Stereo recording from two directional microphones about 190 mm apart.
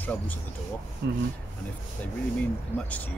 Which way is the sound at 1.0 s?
65° right (ahead or behind).